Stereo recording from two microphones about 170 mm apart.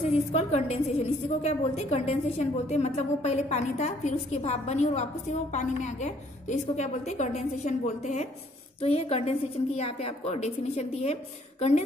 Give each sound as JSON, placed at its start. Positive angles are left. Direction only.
{"t": 0.0, "sound": "a woman's voice", "side_deg": 35}